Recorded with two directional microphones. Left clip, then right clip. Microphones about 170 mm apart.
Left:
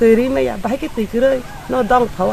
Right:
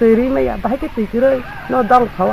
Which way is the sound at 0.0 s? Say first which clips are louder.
Even; 25° left (ahead or behind).